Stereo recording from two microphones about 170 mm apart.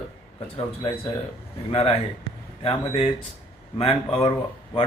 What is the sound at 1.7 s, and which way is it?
Speech, 35° left (ahead or behind).